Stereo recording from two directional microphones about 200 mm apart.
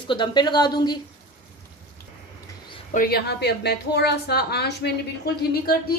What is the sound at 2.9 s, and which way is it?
A woman's voice, 50° left (ahead or behind).